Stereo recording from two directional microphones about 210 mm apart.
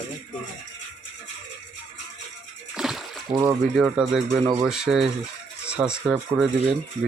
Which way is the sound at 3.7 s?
Centre (ahead or behind).